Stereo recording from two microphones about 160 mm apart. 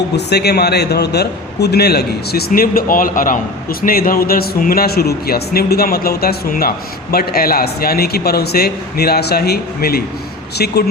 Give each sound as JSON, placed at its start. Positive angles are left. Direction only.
{"t": 0.3, "sound": "a man's voice", "side_deg": 90}